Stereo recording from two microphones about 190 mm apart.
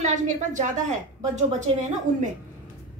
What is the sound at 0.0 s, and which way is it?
A woman's voice, 40° right (ahead or behind).